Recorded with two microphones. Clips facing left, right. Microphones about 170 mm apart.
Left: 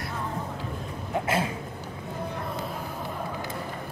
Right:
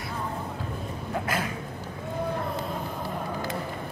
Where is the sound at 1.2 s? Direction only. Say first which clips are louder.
Left 4 dB; 25° left (ahead or behind).